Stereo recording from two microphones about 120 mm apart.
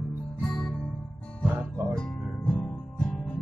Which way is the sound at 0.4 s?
10° left (ahead or behind).